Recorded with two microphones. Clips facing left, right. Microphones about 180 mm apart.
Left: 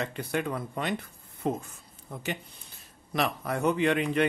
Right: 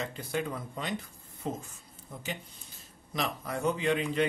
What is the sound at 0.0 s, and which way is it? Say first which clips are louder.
A man's voice: left 3 dB; 65° left (ahead or behind).